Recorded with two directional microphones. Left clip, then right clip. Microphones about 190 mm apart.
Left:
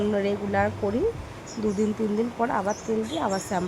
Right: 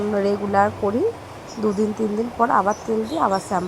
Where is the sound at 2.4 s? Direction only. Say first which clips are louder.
Right 11 dB; centre (ahead or behind).